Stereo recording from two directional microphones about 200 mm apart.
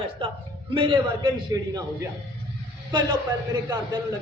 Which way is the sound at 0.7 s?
25° right (ahead or behind).